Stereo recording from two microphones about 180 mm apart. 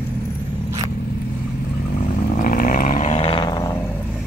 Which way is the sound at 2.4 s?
50° left (ahead or behind).